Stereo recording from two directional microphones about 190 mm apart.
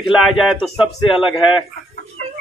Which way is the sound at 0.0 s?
Centre (ahead or behind).